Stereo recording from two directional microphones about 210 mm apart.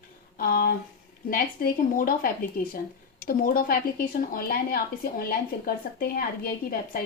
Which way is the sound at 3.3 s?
45° left (ahead or behind).